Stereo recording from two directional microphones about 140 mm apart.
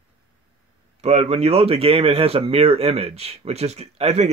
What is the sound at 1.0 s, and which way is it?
Speech, 50° right (ahead or behind).